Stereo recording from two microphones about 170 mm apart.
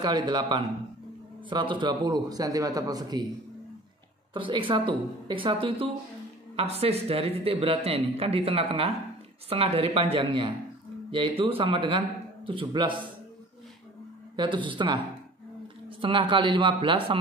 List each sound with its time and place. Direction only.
0.0 s a man's voice: 25° right (ahead or behind)
4.3 s a man's voice: 30° right (ahead or behind)
14.3 s a man's voice: 25° right (ahead or behind)
16.0 s a man's voice: 30° right (ahead or behind)